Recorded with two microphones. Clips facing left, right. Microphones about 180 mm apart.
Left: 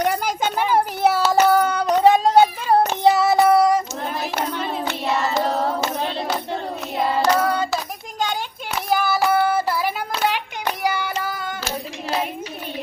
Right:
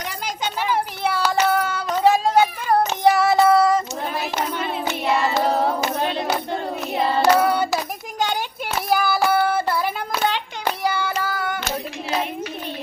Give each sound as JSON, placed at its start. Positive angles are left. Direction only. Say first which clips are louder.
{"t": 0.0, "sound": "children playing", "louder": "left 7 dB", "side_deg": 55}
{"t": 1.3, "sound": "child singing", "louder": "left 4 dB", "side_deg": 40}
{"t": 3.0, "sound": "child singing", "louder": "right 2 dB", "side_deg": 20}
{"t": 4.9, "sound": "hands", "louder": "right 3 dB", "side_deg": -20}
{"t": 6.3, "sound": "hands", "louder": "right 1 dB", "side_deg": -5}
{"t": 8.9, "sound": "child singing", "louder": "even", "side_deg": 0}
{"t": 10.2, "sound": "hands", "louder": "even", "side_deg": 10}
{"t": 10.8, "sound": "child singing", "louder": "even", "side_deg": 15}